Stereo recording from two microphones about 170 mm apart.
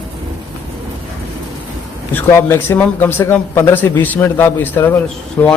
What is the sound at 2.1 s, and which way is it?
A man's voice, 15° left (ahead or behind).